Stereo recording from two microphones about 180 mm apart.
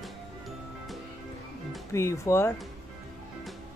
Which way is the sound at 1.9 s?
15° left (ahead or behind).